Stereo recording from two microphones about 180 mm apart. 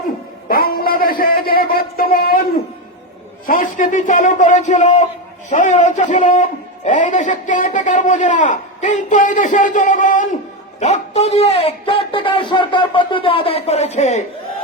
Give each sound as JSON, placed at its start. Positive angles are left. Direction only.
{"t": 0.4, "sound": "a man's voice", "side_deg": 55}
{"t": 3.4, "sound": "a man's voice", "side_deg": 50}